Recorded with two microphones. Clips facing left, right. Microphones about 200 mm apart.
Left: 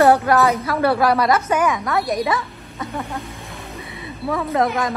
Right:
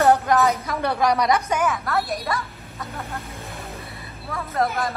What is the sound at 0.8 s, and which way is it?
A woman's voice, 5° left (ahead or behind).